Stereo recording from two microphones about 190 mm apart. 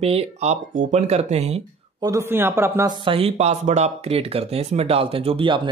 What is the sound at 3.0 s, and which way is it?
A man's voice, 30° right (ahead or behind).